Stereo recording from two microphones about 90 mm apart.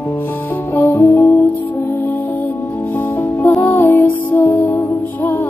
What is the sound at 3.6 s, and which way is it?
Music, 20° left (ahead or behind).